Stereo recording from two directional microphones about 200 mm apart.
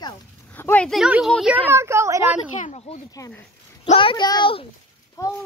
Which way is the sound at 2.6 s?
30° left (ahead or behind).